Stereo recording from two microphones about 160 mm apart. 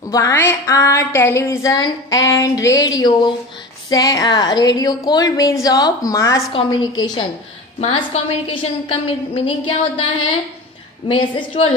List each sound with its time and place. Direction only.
0.1 s a sound: 15° left (ahead or behind)
7.8 s a woman's voice: 40° left (ahead or behind)
11.1 s a woman's voice: 30° left (ahead or behind)